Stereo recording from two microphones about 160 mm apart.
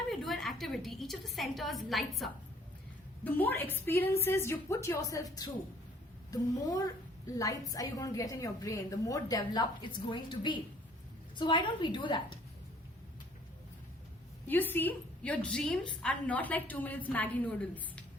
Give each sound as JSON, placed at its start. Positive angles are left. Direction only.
{"t": 0.1, "sound": "a sound", "side_deg": 0}
{"t": 3.2, "sound": "a woman's voice", "side_deg": 10}
{"t": 14.4, "sound": "a woman's voice", "side_deg": 10}